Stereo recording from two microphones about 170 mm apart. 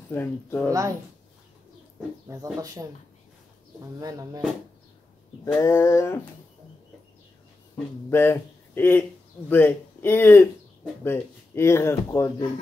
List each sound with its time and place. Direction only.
0.1 s speech: 10° left (ahead or behind)
0.7 s speech: 20° right (ahead or behind)
2.2 s speech: 20° right (ahead or behind)
4.0 s speech: 20° right (ahead or behind)
5.4 s speech: 20° left (ahead or behind)
8.1 s speech: 15° left (ahead or behind)